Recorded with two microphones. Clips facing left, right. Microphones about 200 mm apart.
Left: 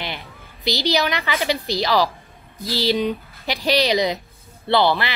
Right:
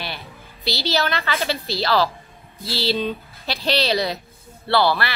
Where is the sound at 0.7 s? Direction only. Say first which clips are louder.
Left 2 dB; 15° left (ahead or behind).